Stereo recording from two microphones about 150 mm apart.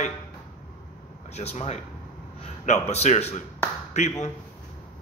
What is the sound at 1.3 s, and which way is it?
A man's voice, 45° left (ahead or behind).